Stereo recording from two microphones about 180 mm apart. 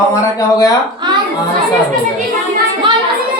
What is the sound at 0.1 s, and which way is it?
Speech, 20° left (ahead or behind).